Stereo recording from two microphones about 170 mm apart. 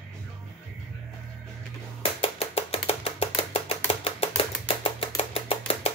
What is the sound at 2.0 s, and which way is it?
Chopping, 35° left (ahead or behind).